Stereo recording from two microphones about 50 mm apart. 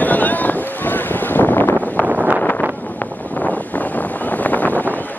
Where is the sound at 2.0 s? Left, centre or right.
Right.